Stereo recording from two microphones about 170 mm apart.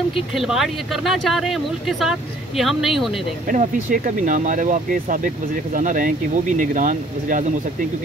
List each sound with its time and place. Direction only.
0.1 s speech: centre (ahead or behind)
3.4 s speech: 50° right (ahead or behind)